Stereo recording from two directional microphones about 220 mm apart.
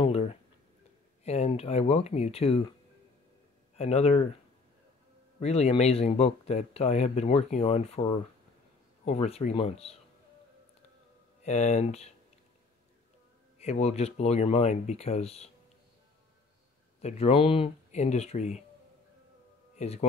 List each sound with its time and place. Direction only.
0.0 s a sound: 30° left (ahead or behind)
1.2 s speech: 30° left (ahead or behind)
3.7 s speech: 30° left (ahead or behind)
5.4 s speech: 30° left (ahead or behind)
11.4 s speech: 30° left (ahead or behind)
13.6 s speech: 30° left (ahead or behind)
17.0 s speech: 25° left (ahead or behind)
19.8 s speech: 30° left (ahead or behind)